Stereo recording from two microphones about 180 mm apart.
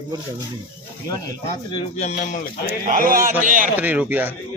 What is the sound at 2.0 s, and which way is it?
Speech, 45° left (ahead or behind).